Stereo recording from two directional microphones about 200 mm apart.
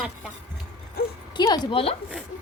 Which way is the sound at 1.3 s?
20° left (ahead or behind).